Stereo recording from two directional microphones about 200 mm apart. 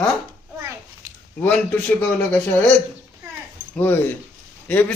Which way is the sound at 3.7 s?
10° left (ahead or behind).